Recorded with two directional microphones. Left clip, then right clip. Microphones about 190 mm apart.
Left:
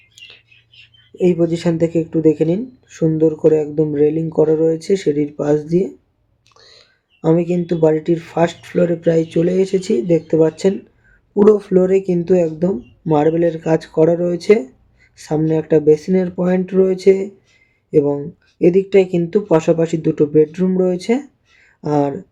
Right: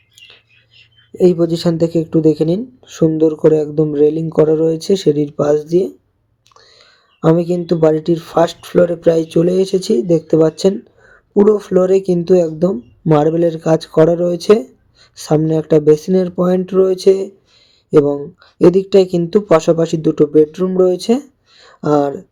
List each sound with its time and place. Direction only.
0.2 s a sound: centre (ahead or behind)
1.1 s speech: 25° right (ahead or behind)
6.5 s whispering: centre (ahead or behind)
7.2 s speech: 25° right (ahead or behind)
11.4 s speech: centre (ahead or behind)
11.7 s speech: 25° right (ahead or behind)